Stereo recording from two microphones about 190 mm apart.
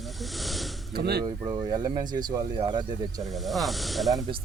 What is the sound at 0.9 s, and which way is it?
Speech, 60° right (ahead or behind).